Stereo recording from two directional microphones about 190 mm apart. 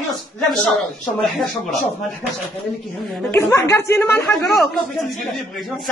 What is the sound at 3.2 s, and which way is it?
A woman's voice, 10° left (ahead or behind).